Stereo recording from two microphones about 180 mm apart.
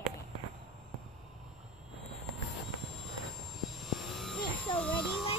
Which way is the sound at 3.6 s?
Centre (ahead or behind).